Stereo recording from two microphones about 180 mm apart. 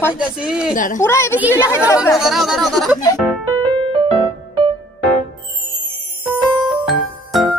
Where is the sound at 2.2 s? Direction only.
Centre (ahead or behind).